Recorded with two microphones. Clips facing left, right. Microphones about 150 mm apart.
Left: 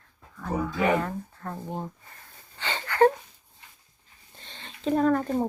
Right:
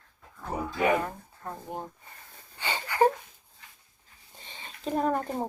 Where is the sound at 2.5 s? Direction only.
10° right (ahead or behind).